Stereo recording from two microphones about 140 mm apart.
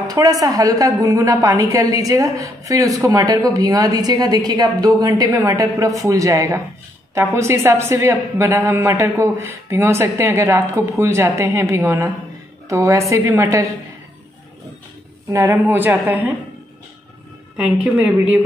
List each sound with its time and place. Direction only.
0.1 s a woman's voice: 25° right (ahead or behind)
15.3 s a woman's voice: 15° right (ahead or behind)
17.9 s a woman's voice: 10° right (ahead or behind)